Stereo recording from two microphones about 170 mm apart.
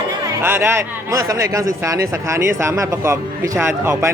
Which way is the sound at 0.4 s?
15° right (ahead or behind).